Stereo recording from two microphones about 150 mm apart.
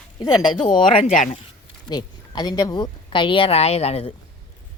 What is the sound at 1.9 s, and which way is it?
A woman's voice, 25° left (ahead or behind).